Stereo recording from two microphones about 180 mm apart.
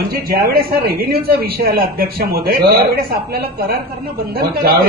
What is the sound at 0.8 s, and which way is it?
A man's voice, 55° right (ahead or behind).